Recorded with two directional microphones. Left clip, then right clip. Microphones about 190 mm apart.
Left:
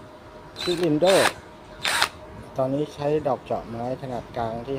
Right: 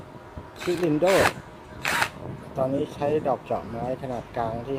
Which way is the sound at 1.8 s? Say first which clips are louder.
Left 2 dB; 15° left (ahead or behind).